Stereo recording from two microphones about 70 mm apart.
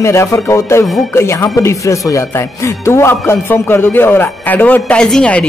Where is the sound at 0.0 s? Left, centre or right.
Left.